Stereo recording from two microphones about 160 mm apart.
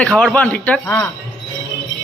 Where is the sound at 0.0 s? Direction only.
5° left (ahead or behind).